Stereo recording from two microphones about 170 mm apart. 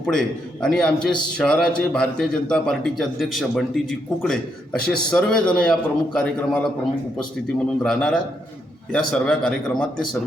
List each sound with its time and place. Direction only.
0.0 s a man's voice: 5° left (ahead or behind)